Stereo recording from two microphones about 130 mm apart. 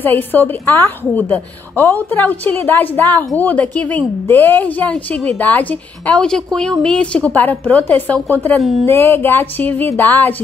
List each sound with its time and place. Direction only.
0.0 s a woman's voice: 15° left (ahead or behind)
8.5 s speech: centre (ahead or behind)
8.8 s a woman's voice: 15° left (ahead or behind)